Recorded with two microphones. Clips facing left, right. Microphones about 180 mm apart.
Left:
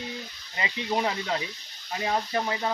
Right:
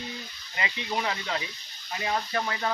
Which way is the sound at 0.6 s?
35° left (ahead or behind).